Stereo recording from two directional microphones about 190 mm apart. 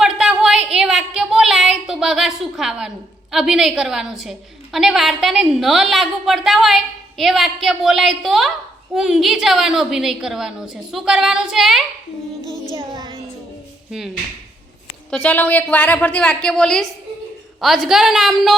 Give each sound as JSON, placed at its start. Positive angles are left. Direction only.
{"t": 0.0, "sound": "a sound", "side_deg": 0}
{"t": 3.3, "sound": "a woman's voice", "side_deg": 0}
{"t": 12.8, "sound": "child singing", "side_deg": -25}
{"t": 15.1, "sound": "a woman's voice", "side_deg": 10}